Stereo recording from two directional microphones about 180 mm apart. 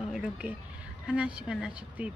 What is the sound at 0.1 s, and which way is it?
Speech, 5° right (ahead or behind).